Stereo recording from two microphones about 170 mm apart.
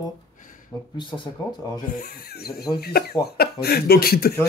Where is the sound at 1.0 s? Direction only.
30° left (ahead or behind).